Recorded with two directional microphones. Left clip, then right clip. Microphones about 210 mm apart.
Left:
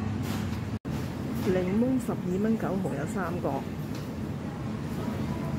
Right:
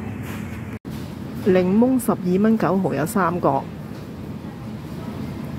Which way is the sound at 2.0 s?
30° right (ahead or behind).